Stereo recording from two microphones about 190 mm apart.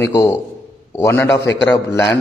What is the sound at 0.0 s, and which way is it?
A man's voice, 15° left (ahead or behind).